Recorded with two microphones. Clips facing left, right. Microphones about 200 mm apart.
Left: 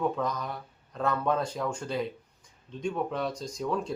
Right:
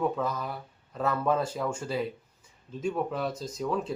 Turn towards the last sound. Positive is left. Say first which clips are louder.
# right 1 dB
turn(degrees=0)  # may be behind; listen again after turning